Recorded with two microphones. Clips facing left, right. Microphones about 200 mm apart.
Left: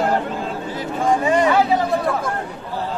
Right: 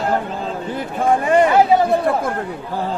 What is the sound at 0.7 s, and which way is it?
Speech, 60° right (ahead or behind).